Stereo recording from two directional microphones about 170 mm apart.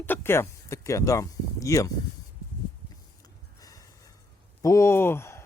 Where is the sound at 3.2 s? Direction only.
20° left (ahead or behind).